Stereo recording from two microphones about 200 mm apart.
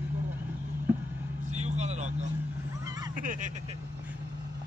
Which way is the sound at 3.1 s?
40° right (ahead or behind).